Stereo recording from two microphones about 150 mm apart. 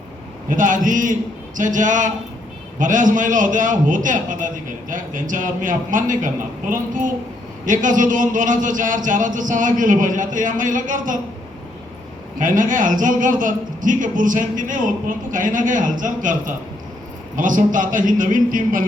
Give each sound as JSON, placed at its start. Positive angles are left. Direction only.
{"t": 0.5, "sound": "a man's voice", "side_deg": -60}
{"t": 12.4, "sound": "a man's voice", "side_deg": -60}